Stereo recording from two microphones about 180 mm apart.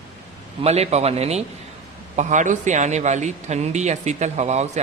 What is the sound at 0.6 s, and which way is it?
A man's voice, 35° right (ahead or behind).